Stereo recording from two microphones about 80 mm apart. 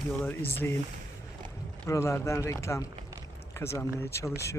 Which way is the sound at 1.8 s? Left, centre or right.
Left.